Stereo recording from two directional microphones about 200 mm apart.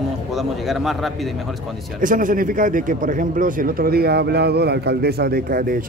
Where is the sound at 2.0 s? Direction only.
40° right (ahead or behind).